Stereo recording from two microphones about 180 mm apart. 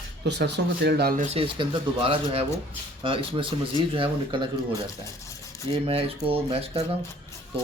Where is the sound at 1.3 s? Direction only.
30° right (ahead or behind).